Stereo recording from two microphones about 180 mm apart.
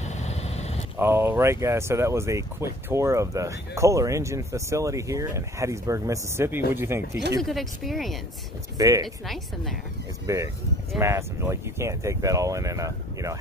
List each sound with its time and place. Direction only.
0.0 s vehicle: 40° left (ahead or behind)
0.9 s speech: 15° right (ahead or behind)
7.4 s a woman's voice: centre (ahead or behind)
8.7 s speech: 20° right (ahead or behind)
9.0 s a woman's voice: centre (ahead or behind)
10.2 s speech: 15° right (ahead or behind)